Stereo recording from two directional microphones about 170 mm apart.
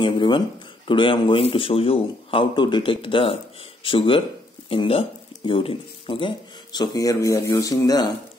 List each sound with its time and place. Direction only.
0.0 s speech: 30° left (ahead or behind)